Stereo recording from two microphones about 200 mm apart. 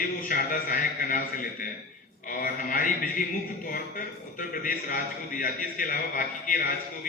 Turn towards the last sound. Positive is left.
turn(degrees=45)  # may be behind; listen again after turning